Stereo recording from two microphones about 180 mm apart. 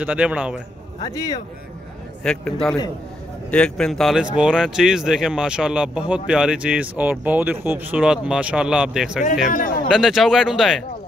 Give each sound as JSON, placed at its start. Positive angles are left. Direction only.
{"t": 0.0, "sound": "a man's voice", "side_deg": -5}
{"t": 1.0, "sound": "speech", "side_deg": 20}
{"t": 2.2, "sound": "speech", "side_deg": 5}
{"t": 3.4, "sound": "speech", "side_deg": 5}
{"t": 9.5, "sound": "speech", "side_deg": 45}
{"t": 9.9, "sound": "speech", "side_deg": 0}